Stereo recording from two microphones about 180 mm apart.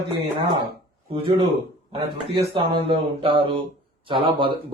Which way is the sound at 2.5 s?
30° right (ahead or behind).